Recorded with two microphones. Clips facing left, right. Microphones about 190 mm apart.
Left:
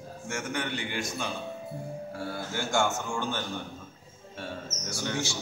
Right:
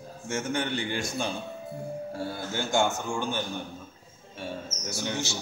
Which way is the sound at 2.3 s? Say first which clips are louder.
Right 1 dB; 20° right (ahead or behind).